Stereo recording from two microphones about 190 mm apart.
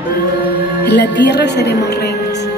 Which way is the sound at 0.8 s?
65° left (ahead or behind).